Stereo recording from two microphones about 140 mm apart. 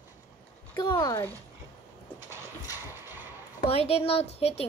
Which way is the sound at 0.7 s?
30° left (ahead or behind).